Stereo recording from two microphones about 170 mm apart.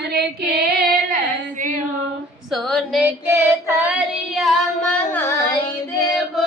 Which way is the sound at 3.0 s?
15° right (ahead or behind).